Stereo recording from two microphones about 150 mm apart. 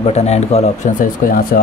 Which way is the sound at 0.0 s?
45° left (ahead or behind).